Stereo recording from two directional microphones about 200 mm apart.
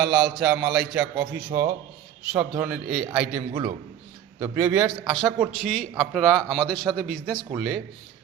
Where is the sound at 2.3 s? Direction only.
5° right (ahead or behind).